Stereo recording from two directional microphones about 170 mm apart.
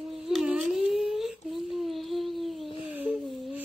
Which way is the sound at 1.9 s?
Centre (ahead or behind).